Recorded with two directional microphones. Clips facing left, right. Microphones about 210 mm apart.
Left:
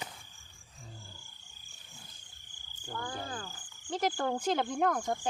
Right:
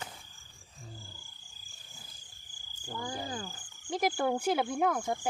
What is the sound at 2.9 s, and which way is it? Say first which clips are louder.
Speech: right 2 dB; 10° right (ahead or behind).